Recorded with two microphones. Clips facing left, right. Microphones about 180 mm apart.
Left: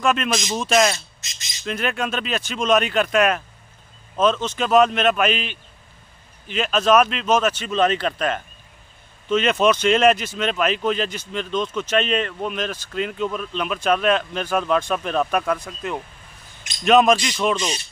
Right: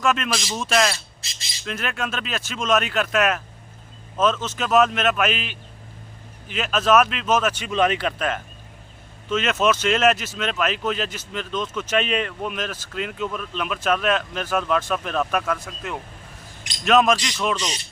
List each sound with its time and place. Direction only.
0.0 s speech: centre (ahead or behind)
1.2 s speech: 30° right (ahead or behind)
1.7 s speech: centre (ahead or behind)